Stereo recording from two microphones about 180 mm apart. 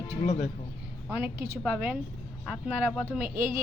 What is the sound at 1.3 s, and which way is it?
Speech, 60° right (ahead or behind).